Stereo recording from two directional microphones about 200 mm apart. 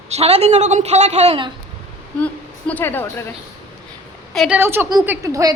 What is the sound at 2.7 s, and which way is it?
Speech, 10° left (ahead or behind).